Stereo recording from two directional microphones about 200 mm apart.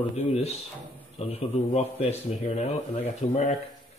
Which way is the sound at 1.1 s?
30° left (ahead or behind).